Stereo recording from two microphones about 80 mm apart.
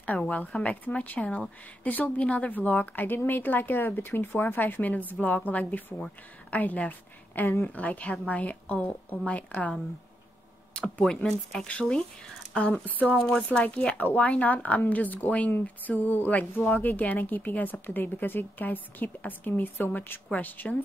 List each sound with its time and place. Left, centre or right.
0.0 s a woman's voice: centre
10.8 s a woman's voice: centre